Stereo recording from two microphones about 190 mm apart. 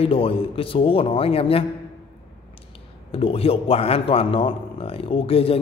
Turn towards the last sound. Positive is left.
turn(degrees=30)  # may be behind; listen again after turning